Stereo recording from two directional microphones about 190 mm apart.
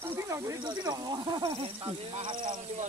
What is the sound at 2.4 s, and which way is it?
Speech, 40° right (ahead or behind).